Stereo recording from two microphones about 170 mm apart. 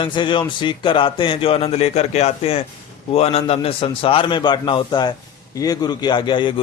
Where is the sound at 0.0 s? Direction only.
30° left (ahead or behind).